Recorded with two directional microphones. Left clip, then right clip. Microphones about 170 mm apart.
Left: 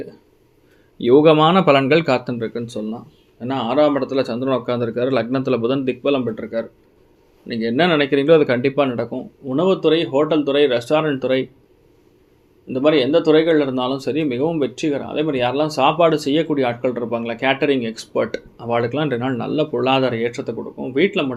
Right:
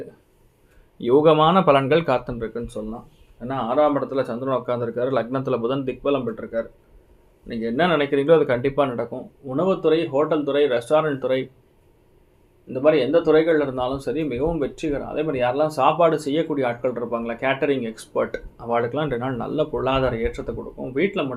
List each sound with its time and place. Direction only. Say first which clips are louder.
0.9 s speech: left 4 dB; 30° left (ahead or behind)
12.7 s speech: left 2 dB; 35° left (ahead or behind)